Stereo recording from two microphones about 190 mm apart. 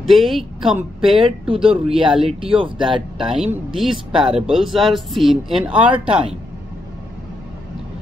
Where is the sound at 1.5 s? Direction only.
30° right (ahead or behind).